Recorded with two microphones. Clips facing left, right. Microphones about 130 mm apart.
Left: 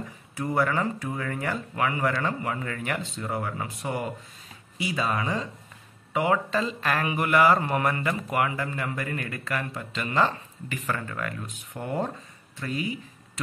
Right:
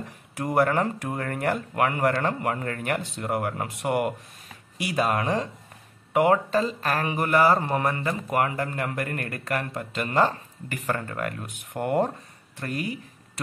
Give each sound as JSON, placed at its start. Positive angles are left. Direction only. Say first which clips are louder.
{"t": 0.4, "sound": "a man's voice", "louder": "right 3 dB", "side_deg": -60}
{"t": 6.1, "sound": "speech", "louder": "right 4 dB", "side_deg": -45}
{"t": 8.3, "sound": "a man's voice", "louder": "right 4 dB", "side_deg": -45}
{"t": 11.7, "sound": "a man's voice", "louder": "right 6 dB", "side_deg": -65}